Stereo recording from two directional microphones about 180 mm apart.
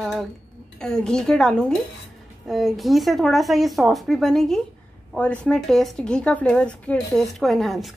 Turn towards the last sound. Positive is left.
turn(degrees=0)  # may be behind; listen again after turning